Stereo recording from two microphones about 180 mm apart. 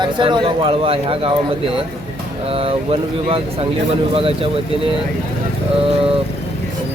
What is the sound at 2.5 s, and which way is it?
Speech, 30° right (ahead or behind).